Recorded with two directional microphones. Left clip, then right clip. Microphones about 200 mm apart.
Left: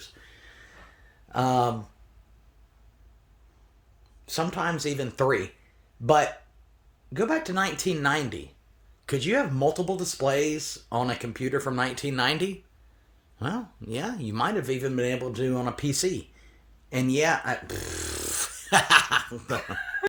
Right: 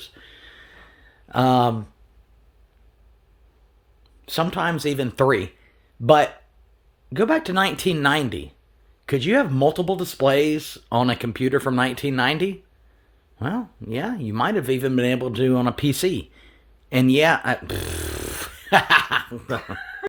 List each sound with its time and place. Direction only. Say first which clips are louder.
0.0 s a sound: right 6 dB; 50° right (ahead or behind)
1.3 s speech: right 6 dB; 50° right (ahead or behind)
4.3 s speech: right 5 dB; 50° right (ahead or behind)
7.1 s speech: right 6 dB; 55° right (ahead or behind)
9.0 s speech: right 6 dB; 35° right (ahead or behind)
14.6 s speech: right 6 dB; 50° right (ahead or behind); by 19.5 s 25° right (ahead or behind)